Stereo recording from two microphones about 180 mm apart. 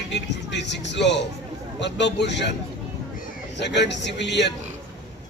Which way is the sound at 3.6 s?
75° left (ahead or behind).